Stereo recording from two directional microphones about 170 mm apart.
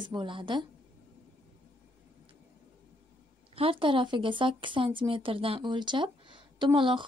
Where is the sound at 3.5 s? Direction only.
35° right (ahead or behind).